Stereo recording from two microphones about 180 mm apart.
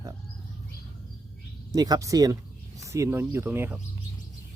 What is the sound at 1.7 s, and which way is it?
Speech, 20° right (ahead or behind).